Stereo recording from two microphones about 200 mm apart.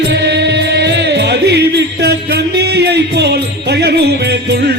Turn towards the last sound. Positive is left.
turn(degrees=-55)  # may be behind; listen again after turning